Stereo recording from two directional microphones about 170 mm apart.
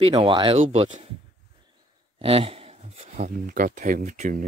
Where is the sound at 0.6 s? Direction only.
45° right (ahead or behind).